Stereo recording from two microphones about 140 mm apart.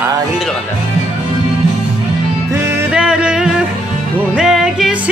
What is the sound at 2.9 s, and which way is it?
Music, 5° right (ahead or behind).